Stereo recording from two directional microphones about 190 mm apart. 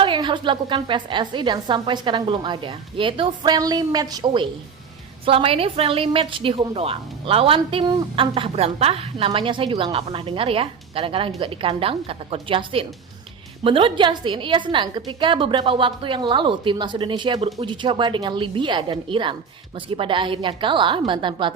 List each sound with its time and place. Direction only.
0.0 s a woman's voice: 25° right (ahead or behind)